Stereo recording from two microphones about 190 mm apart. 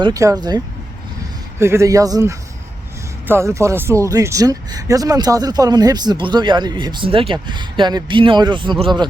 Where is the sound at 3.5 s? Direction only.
15° right (ahead or behind).